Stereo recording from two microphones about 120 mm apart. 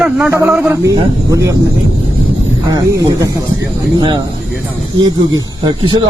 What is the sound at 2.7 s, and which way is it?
Speech, 30° right (ahead or behind).